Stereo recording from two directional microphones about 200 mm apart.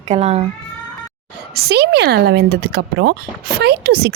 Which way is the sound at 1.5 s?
55° right (ahead or behind).